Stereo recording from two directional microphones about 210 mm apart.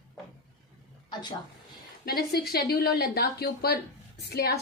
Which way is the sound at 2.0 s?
50° left (ahead or behind).